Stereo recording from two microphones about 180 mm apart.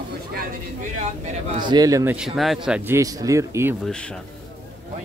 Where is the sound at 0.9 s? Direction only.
40° right (ahead or behind).